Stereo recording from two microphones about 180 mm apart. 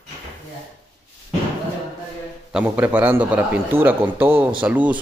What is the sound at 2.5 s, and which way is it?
A man's voice, 10° right (ahead or behind).